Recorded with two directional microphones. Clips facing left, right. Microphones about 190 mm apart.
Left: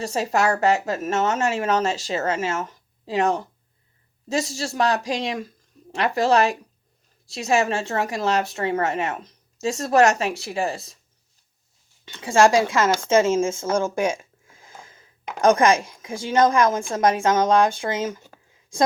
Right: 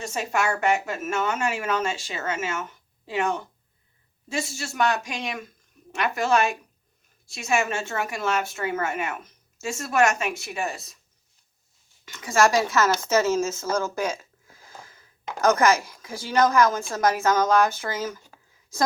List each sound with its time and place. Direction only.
0.0 s a woman's voice: 35° left (ahead or behind)
12.0 s speech: 30° left (ahead or behind)